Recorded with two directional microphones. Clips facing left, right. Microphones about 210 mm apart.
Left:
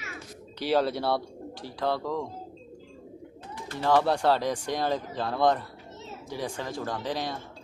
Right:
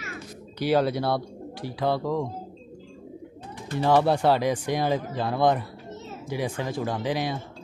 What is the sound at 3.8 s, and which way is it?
Speech, 20° right (ahead or behind).